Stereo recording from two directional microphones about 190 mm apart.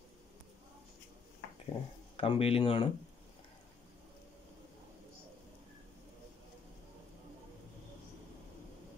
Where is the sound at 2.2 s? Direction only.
30° left (ahead or behind).